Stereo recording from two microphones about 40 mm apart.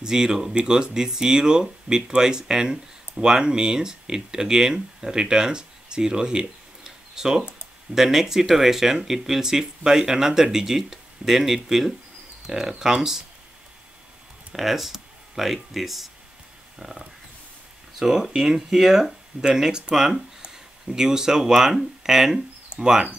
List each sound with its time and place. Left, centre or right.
0.0 s speech: centre
14.5 s speech: centre
16.7 s a sound: centre
17.9 s speech: centre
18.3 s speech: right
18.7 s speech: centre